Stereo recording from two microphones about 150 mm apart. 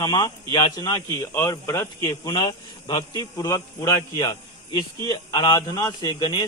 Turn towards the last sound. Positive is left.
turn(degrees=25)  # may be behind; listen again after turning